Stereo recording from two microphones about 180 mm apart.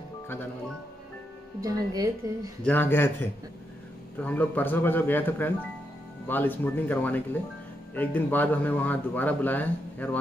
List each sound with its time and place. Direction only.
1.6 s speech: 20° right (ahead or behind)
2.6 s speech: 10° left (ahead or behind)